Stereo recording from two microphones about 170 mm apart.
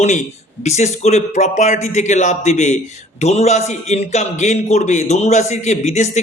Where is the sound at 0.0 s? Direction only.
40° left (ahead or behind).